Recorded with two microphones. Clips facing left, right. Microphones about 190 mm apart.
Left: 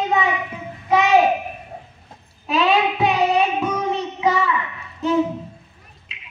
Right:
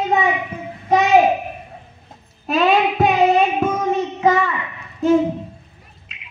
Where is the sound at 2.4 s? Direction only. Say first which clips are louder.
Right 2 dB; 45° right (ahead or behind).